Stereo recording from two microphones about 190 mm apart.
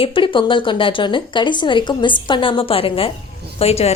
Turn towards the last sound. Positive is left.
turn(degrees=30)  # may be behind; listen again after turning